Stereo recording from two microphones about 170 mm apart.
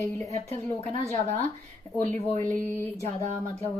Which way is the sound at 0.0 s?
15° left (ahead or behind).